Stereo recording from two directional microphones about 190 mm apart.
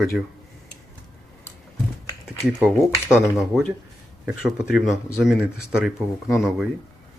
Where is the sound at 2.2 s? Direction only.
5° right (ahead or behind).